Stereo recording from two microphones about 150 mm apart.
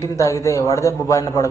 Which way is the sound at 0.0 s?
20° left (ahead or behind).